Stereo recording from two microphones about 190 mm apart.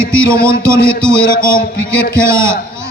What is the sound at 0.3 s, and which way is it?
Speech, 15° right (ahead or behind).